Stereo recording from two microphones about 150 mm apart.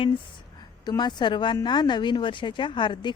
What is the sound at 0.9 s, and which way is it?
A woman's voice, 30° left (ahead or behind).